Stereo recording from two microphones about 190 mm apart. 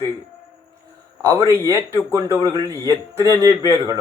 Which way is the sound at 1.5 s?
15° right (ahead or behind).